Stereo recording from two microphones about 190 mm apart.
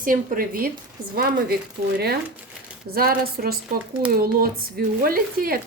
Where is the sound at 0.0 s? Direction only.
45° right (ahead or behind).